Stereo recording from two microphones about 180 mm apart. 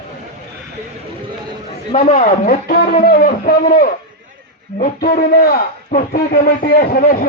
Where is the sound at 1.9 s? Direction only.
40° left (ahead or behind).